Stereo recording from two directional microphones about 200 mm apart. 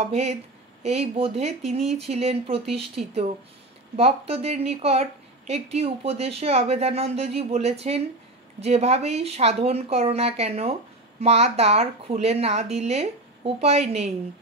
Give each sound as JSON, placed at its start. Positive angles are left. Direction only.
{"t": 0.0, "sound": "speech", "side_deg": -35}